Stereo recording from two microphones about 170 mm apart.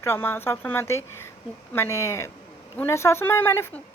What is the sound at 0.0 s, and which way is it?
A woman's voice, 15° left (ahead or behind).